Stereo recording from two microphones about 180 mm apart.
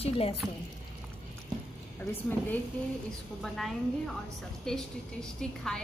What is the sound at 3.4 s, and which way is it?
A woman's voice, centre (ahead or behind).